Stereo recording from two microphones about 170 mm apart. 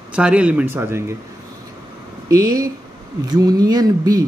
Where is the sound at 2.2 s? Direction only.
20° right (ahead or behind).